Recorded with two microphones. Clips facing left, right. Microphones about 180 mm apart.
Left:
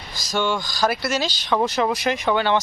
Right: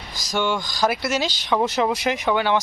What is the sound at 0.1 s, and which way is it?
A man's voice, 15° right (ahead or behind).